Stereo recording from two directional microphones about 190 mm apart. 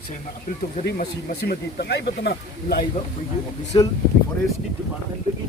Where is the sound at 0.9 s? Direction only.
50° left (ahead or behind).